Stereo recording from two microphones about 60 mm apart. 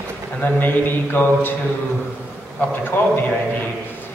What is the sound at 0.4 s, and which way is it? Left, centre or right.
Speech, left.